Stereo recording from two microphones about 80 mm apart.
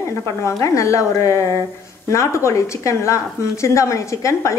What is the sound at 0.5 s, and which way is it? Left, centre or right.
A woman's voice, left.